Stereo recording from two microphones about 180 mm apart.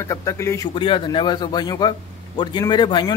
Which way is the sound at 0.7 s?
30° left (ahead or behind).